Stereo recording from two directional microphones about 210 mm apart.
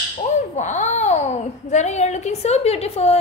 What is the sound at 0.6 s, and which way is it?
A child's voice, 35° left (ahead or behind).